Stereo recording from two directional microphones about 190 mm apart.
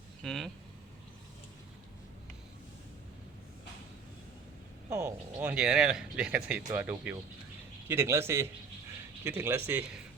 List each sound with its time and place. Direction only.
0.2 s speech: centre (ahead or behind)
4.9 s a man's voice: 15° right (ahead or behind)